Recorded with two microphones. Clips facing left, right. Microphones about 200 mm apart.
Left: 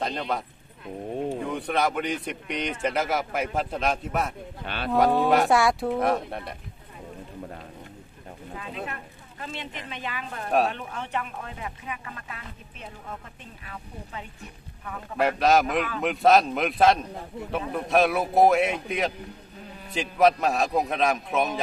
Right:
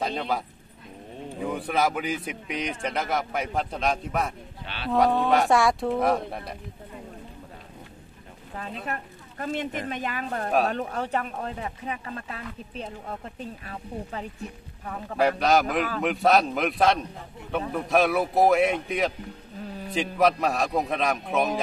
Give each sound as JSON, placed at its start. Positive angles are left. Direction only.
{"t": 0.0, "sound": "a man's voice", "side_deg": 0}
{"t": 1.5, "sound": "a man's voice", "side_deg": -5}
{"t": 4.6, "sound": "speech", "side_deg": 50}
{"t": 4.9, "sound": "a man's voice", "side_deg": 0}
{"t": 8.5, "sound": "speech", "side_deg": -45}
{"t": 15.1, "sound": "a man's voice", "side_deg": 0}